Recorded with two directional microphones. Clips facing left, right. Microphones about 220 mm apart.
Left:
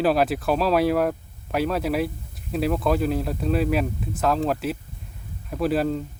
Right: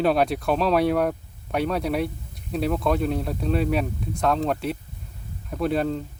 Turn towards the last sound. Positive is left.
turn(degrees=5)  # may be behind; listen again after turning